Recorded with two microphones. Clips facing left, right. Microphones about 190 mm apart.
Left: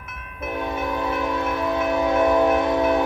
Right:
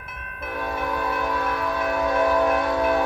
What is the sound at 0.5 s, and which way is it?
Train, 20° left (ahead or behind).